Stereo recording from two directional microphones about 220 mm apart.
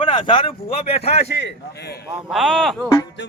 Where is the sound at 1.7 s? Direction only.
50° left (ahead or behind).